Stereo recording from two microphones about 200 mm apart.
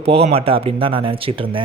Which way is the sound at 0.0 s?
30° right (ahead or behind).